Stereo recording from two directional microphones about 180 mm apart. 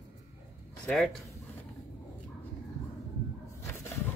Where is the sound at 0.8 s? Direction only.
5° left (ahead or behind).